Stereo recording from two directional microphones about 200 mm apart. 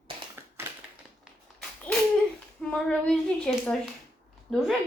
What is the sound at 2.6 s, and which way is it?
A woman's voice, 5° left (ahead or behind).